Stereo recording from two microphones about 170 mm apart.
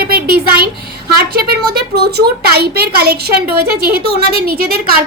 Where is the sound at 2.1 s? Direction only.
70° right (ahead or behind).